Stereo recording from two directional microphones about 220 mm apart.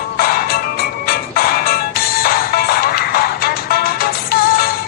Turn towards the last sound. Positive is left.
turn(degrees=45)  # may be behind; listen again after turning